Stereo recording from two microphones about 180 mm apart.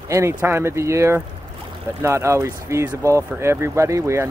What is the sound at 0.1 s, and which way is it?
Speech, 15° right (ahead or behind).